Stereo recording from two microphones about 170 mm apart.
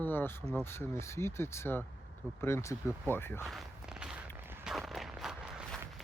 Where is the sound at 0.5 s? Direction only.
15° left (ahead or behind).